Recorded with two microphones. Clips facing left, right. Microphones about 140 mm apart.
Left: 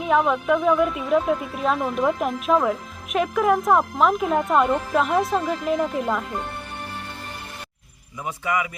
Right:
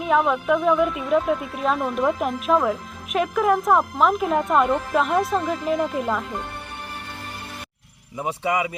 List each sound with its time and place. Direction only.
0.0 s speech: centre (ahead or behind)
8.2 s speech: 30° right (ahead or behind)